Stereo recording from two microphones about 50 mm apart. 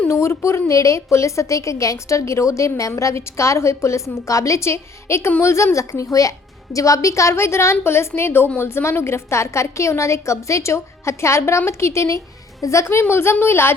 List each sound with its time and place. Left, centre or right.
0.1 s a woman's voice: left
0.7 s a woman's voice: left
5.7 s a woman's voice: left
8.5 s a woman's voice: left
13.0 s a woman's voice: left